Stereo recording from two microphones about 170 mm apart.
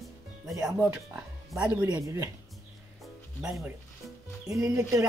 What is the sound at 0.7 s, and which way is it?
Speech, 5° right (ahead or behind).